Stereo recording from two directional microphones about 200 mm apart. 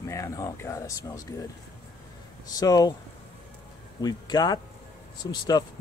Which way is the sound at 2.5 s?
20° left (ahead or behind).